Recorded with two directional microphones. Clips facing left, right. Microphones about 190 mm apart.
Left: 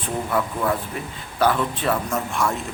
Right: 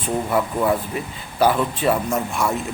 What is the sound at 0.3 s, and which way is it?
Speech, 15° right (ahead or behind).